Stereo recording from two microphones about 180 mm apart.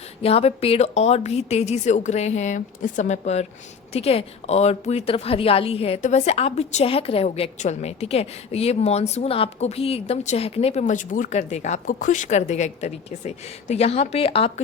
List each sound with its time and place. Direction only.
0.2 s a woman's voice: 35° left (ahead or behind)